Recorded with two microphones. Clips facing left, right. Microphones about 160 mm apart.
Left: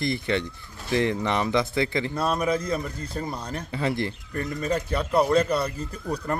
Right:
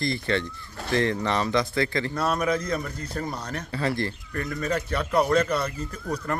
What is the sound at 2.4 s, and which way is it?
Speech, 30° left (ahead or behind).